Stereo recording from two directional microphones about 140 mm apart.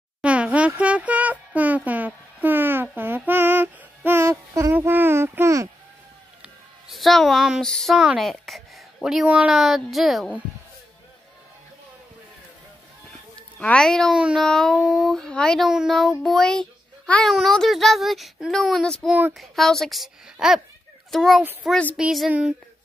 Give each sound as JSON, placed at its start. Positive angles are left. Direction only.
{"t": 0.2, "sound": "a sound", "side_deg": -10}
{"t": 3.3, "sound": "music", "side_deg": -15}
{"t": 6.4, "sound": "a woman's voice", "side_deg": 0}
{"t": 13.6, "sound": "a child's voice", "side_deg": 5}